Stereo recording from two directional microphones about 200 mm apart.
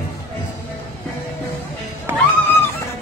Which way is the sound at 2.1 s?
10° right (ahead or behind).